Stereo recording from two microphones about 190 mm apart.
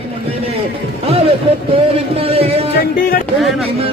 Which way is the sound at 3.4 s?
Centre (ahead or behind).